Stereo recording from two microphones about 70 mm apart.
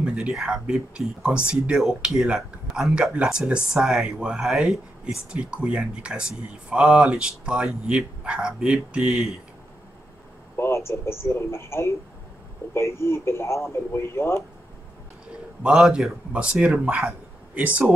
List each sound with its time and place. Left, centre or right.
0.0 s a sound: centre
0.3 s speech: centre
10.5 s speech: left
15.6 s speech: centre